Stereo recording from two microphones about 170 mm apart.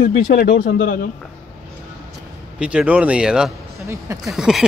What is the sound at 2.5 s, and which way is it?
Speech, 5° right (ahead or behind).